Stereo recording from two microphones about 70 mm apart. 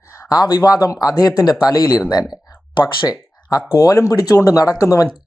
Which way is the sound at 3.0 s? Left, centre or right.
Left.